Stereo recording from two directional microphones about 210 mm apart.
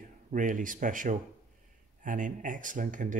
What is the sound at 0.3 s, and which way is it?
Speech, 40° right (ahead or behind).